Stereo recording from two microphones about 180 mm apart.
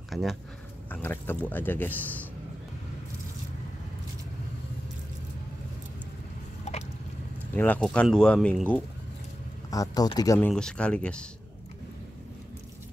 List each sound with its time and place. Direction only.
0.1 s a sound: centre (ahead or behind)
0.8 s speech: 10° left (ahead or behind)
7.5 s speech: 10° left (ahead or behind)
9.7 s speech: 20° left (ahead or behind)
10.5 s speech: 5° left (ahead or behind)